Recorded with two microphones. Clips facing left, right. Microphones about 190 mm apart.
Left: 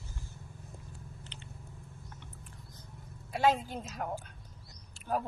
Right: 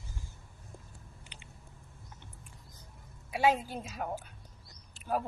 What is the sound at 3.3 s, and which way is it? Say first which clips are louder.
Speech: even; 10° right (ahead or behind).